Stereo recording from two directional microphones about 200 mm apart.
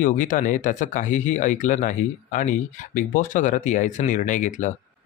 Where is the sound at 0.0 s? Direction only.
40° left (ahead or behind).